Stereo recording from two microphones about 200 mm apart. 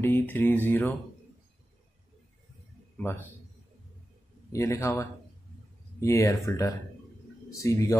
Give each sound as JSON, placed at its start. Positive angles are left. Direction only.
{"t": 0.0, "sound": "mantra", "side_deg": 10}
{"t": 3.0, "sound": "a man's voice", "side_deg": 10}
{"t": 4.5, "sound": "mantra", "side_deg": 15}
{"t": 5.9, "sound": "speech", "side_deg": 15}
{"t": 6.4, "sound": "mantra", "side_deg": 15}